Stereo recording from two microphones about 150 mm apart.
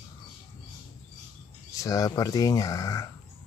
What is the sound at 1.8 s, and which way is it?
Speech, 20° left (ahead or behind).